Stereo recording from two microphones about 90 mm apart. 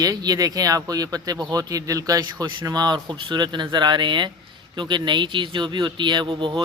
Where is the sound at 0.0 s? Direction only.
50° right (ahead or behind).